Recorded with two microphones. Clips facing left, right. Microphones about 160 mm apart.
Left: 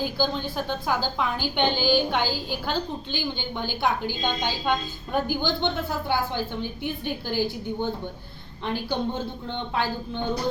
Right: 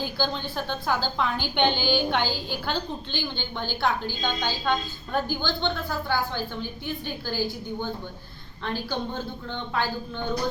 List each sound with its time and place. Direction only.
0.0 s a woman's voice: 5° left (ahead or behind); by 10.2 s 25° left (ahead or behind)